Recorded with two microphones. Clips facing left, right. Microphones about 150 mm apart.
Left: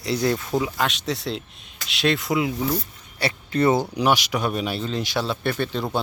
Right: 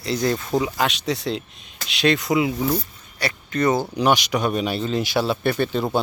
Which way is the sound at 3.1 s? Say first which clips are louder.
Left 1 dB; 30° left (ahead or behind).